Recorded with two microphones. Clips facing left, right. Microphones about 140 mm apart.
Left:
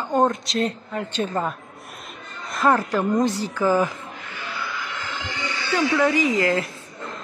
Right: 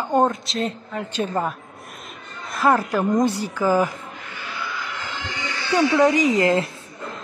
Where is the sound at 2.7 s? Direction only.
10° right (ahead or behind).